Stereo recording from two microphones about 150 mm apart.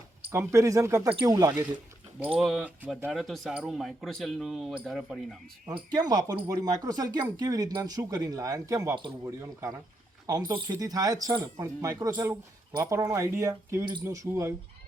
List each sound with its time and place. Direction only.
0.3 s speech: 20° right (ahead or behind)
2.4 s speech: 5° right (ahead or behind)
5.6 s speech: 25° right (ahead or behind)